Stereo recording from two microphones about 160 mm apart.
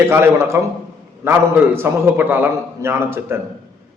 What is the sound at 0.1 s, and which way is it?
A man's voice, 15° right (ahead or behind).